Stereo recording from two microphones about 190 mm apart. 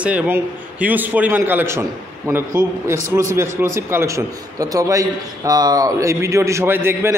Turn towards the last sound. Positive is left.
turn(degrees=-15)  # may be behind; listen again after turning